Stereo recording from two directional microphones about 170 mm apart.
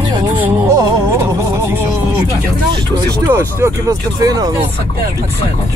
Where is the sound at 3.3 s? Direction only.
15° right (ahead or behind).